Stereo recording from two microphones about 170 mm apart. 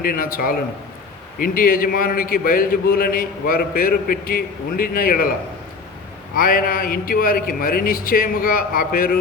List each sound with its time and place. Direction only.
0.0 s a man's voice: 60° left (ahead or behind)
6.3 s a man's voice: 55° left (ahead or behind)